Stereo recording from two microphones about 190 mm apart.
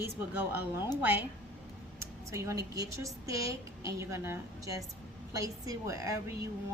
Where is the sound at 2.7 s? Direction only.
15° right (ahead or behind).